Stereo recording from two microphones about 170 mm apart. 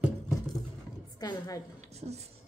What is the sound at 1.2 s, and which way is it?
Speech, 20° left (ahead or behind).